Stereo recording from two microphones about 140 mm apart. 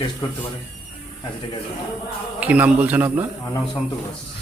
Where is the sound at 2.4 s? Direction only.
10° right (ahead or behind).